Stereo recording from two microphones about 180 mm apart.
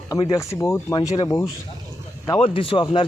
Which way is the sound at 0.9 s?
30° left (ahead or behind).